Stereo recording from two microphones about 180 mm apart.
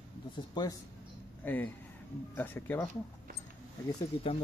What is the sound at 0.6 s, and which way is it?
Speech, 25° left (ahead or behind).